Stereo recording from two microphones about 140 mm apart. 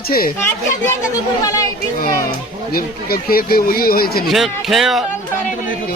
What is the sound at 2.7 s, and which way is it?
Speech, 90° left.